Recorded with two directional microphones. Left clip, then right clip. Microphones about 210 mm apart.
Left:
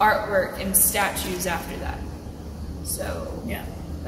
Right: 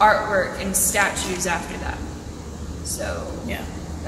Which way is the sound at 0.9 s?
10° left (ahead or behind).